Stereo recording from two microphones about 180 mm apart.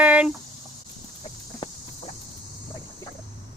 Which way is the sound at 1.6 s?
25° left (ahead or behind).